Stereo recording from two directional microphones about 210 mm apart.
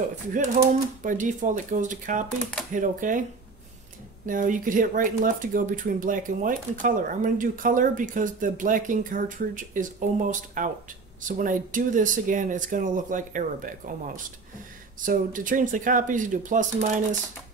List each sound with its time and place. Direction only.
1.0 s speech: 35° right (ahead or behind)
4.3 s speech: 40° right (ahead or behind)